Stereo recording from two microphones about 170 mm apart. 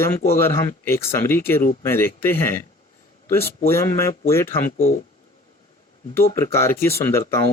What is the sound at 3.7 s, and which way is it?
Speech, 15° left (ahead or behind).